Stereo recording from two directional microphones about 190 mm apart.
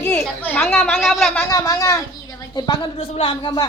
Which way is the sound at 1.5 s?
15° left (ahead or behind).